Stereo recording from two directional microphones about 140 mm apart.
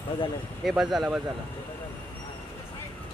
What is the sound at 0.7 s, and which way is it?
Speech, centre (ahead or behind).